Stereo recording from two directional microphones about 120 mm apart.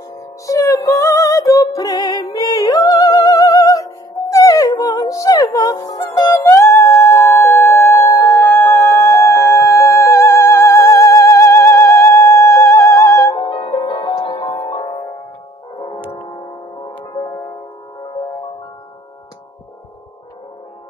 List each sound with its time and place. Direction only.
0.5 s music: 30° left (ahead or behind)
8.5 s music: 20° left (ahead or behind)
13.4 s music: 40° left (ahead or behind)
16.8 s music: 35° left (ahead or behind)